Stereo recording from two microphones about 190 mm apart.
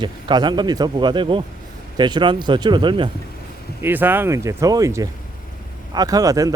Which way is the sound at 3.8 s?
10° right (ahead or behind).